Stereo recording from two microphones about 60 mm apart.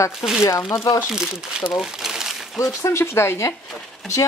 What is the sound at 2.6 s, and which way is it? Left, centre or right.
Speech, left.